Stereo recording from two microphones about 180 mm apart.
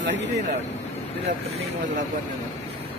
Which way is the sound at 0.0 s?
75° right (ahead or behind).